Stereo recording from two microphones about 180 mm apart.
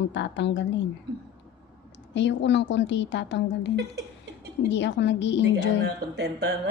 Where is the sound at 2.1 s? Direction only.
80° left.